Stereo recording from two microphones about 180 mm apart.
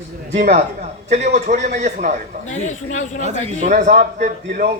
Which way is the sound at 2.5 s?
40° left (ahead or behind).